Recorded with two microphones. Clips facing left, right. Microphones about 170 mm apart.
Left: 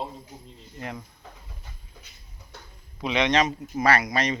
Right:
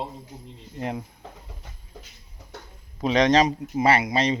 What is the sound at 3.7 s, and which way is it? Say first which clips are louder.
Speech: right 1 dB; 25° right (ahead or behind).